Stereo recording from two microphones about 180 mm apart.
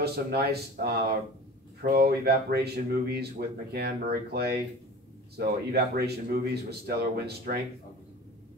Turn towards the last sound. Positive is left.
turn(degrees=-60)  # may be behind; listen again after turning